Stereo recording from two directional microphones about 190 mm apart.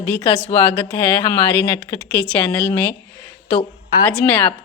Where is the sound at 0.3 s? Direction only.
10° left (ahead or behind).